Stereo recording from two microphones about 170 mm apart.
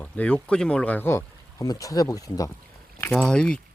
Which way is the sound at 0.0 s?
10° left (ahead or behind).